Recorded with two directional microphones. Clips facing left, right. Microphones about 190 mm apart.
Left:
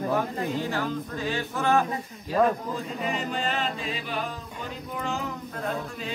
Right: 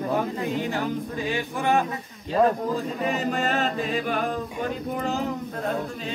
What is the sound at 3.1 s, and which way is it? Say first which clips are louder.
Music: right 4 dB; 45° right (ahead or behind).